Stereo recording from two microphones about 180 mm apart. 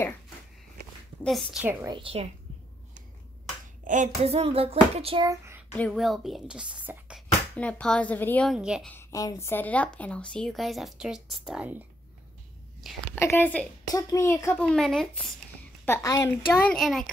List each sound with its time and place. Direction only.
1.2 s speech: centre (ahead or behind)
1.9 s a woman's voice: 30° right (ahead or behind)
3.8 s music: 45° right (ahead or behind)
5.2 s speech: 15° right (ahead or behind)
5.7 s speech: 5° left (ahead or behind)
7.5 s a woman's voice: 10° left (ahead or behind)
8.5 s speech: 5° right (ahead or behind)
8.9 s a woman's voice: 15° left (ahead or behind); by 11.8 s 5° right (ahead or behind)
13.1 s a woman's voice: 10° left (ahead or behind)
13.9 s a woman's voice: 20° left (ahead or behind)
14.6 s speech: 5° left (ahead or behind)
15.8 s a woman's voice: 15° left (ahead or behind)
16.6 s speech: centre (ahead or behind)